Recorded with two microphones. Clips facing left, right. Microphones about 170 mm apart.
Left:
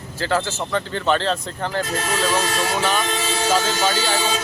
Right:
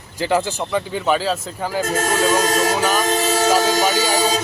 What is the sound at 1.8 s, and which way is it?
Speech, 45° right (ahead or behind).